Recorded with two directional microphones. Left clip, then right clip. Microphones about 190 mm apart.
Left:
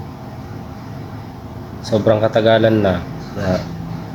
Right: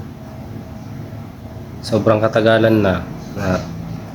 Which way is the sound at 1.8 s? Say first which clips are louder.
Even; 15° right (ahead or behind).